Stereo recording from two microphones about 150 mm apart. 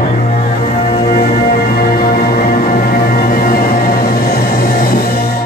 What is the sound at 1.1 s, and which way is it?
Music, 80° left.